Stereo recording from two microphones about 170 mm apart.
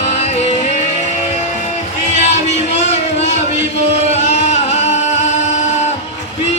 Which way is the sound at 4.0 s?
40° left (ahead or behind).